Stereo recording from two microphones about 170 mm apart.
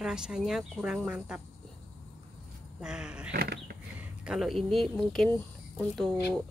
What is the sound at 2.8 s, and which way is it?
Speech, 5° right (ahead or behind).